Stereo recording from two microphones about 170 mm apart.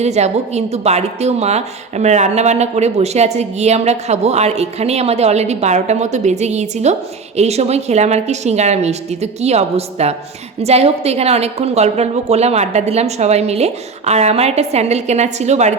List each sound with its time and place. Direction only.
0.0 s a woman's voice: 40° right (ahead or behind)